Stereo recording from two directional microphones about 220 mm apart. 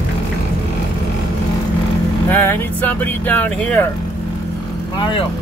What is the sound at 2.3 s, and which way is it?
Vehicle, 10° left (ahead or behind).